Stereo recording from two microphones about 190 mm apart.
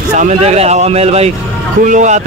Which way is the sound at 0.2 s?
35° right (ahead or behind).